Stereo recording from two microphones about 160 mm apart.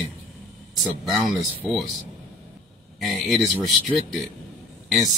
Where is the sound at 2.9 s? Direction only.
Centre (ahead or behind).